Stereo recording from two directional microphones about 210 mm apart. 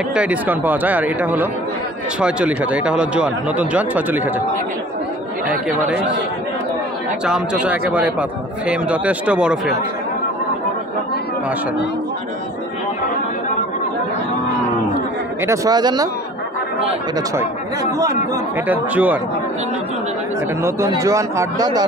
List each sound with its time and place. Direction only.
0.1 s speech: 5° right (ahead or behind)
7.2 s a man's voice: 5° right (ahead or behind)
15.4 s speech: 15° right (ahead or behind)
17.9 s speech: 15° right (ahead or behind)
20.6 s speech: 15° right (ahead or behind)